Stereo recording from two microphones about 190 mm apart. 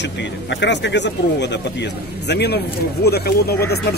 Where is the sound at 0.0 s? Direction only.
65° left (ahead or behind).